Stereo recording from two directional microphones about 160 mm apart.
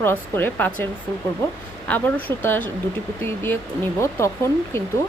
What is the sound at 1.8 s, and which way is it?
Speech, 10° left (ahead or behind).